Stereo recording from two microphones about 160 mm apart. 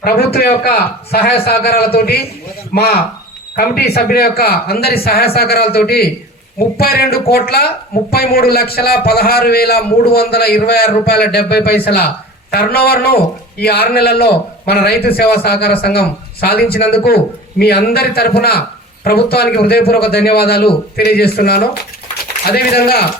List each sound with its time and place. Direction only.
0.0 s a man's voice: 80° left